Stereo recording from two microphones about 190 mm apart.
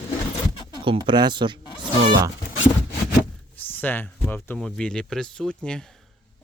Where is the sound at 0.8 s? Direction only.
25° right (ahead or behind).